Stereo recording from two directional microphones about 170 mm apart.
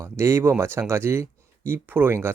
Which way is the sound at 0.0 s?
15° right (ahead or behind).